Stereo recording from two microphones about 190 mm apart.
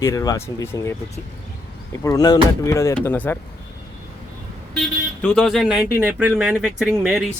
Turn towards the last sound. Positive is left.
turn(degrees=-5)  # may be behind; listen again after turning